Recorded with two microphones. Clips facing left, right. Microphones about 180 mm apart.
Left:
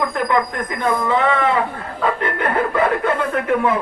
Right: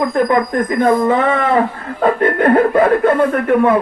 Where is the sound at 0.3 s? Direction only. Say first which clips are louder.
Right 5 dB; 45° right (ahead or behind).